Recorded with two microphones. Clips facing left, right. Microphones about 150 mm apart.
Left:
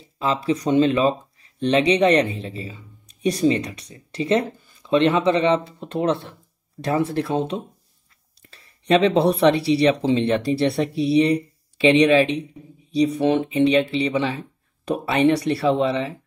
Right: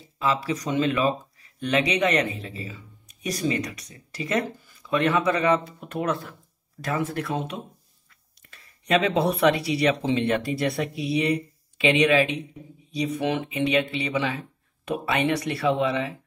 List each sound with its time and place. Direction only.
0.2 s speech: 30° left (ahead or behind)